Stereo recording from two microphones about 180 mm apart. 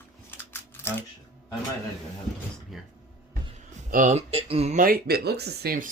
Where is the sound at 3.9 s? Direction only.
45° right (ahead or behind).